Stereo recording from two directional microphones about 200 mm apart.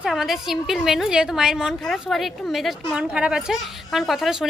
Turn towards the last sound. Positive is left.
turn(degrees=0)  # may be behind; listen again after turning